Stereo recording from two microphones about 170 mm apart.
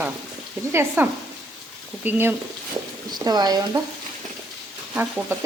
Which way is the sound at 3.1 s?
25° right (ahead or behind).